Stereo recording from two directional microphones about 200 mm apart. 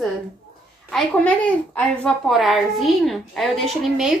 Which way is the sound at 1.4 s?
5° left (ahead or behind).